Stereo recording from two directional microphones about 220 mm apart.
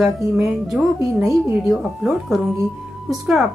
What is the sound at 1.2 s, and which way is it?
A woman's voice, centre (ahead or behind).